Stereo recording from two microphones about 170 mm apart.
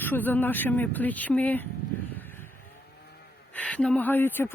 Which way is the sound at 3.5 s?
5° left (ahead or behind).